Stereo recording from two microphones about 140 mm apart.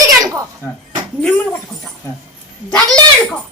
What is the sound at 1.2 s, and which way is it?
Speech, 10° left (ahead or behind).